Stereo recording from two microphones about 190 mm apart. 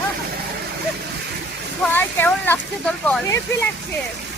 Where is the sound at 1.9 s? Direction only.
10° left (ahead or behind).